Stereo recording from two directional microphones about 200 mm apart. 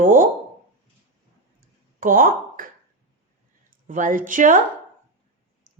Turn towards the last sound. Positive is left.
turn(degrees=-40)  # may be behind; listen again after turning